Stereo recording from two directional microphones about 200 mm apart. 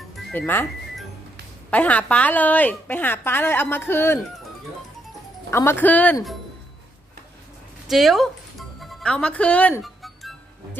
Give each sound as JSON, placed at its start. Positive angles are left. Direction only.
{"t": 0.3, "sound": "a woman's voice", "side_deg": 10}
{"t": 5.5, "sound": "a woman's voice", "side_deg": 10}
{"t": 7.9, "sound": "music", "side_deg": 0}